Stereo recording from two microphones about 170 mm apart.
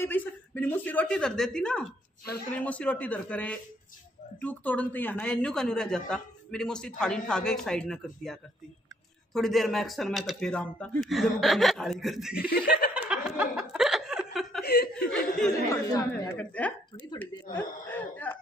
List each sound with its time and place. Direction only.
0.0 s speech: 10° left (ahead or behind)
12.9 s chuckle: 10° right (ahead or behind)
14.6 s speech: 70° left (ahead or behind)
15.0 s speech: 5° left (ahead or behind)
15.7 s speech: 20° left (ahead or behind)
16.3 s speech: 10° left (ahead or behind)